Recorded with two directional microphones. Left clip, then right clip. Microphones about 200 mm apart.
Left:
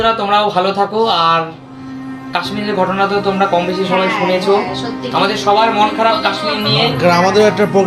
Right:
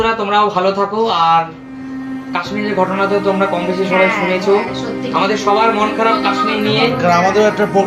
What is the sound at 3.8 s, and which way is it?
Speech, 15° left (ahead or behind).